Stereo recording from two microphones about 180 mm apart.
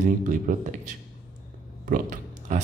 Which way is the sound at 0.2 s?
45° right (ahead or behind).